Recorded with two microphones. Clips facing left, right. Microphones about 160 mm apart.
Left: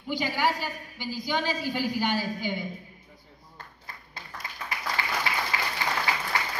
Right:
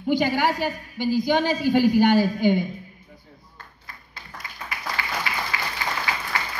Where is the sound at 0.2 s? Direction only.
60° right (ahead or behind).